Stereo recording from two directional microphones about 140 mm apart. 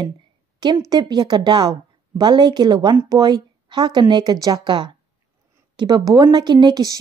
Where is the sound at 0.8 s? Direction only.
30° right (ahead or behind).